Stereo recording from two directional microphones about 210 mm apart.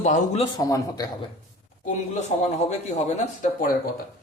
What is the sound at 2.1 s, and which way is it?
Speech, 30° left (ahead or behind).